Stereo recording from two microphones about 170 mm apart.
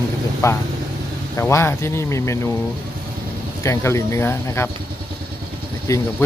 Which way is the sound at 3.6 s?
15° left (ahead or behind).